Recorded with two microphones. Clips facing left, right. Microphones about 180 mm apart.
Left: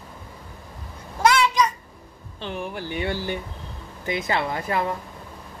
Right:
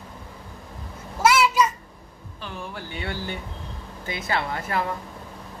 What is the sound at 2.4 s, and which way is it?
Speech, 20° left (ahead or behind).